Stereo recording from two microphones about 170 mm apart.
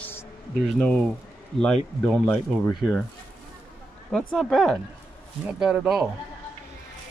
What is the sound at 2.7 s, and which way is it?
Speech, centre (ahead or behind).